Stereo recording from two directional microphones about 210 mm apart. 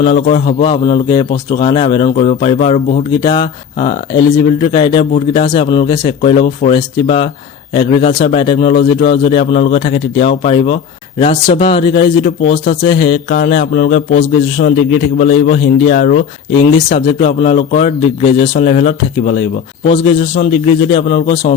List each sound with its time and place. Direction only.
0.0 s speech: 30° left (ahead or behind)
14.6 s a man's voice: 45° left (ahead or behind)